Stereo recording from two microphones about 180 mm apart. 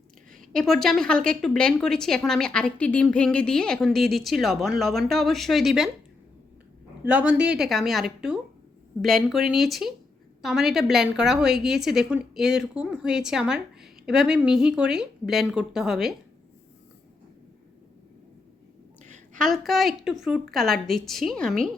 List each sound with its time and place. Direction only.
0.5 s a woman's voice: centre (ahead or behind)
7.0 s a woman's voice: 5° right (ahead or behind)
19.0 s a sound: 40° right (ahead or behind)
19.4 s a woman's voice: centre (ahead or behind)